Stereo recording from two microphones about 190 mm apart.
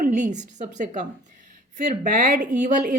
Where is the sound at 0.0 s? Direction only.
40° right (ahead or behind).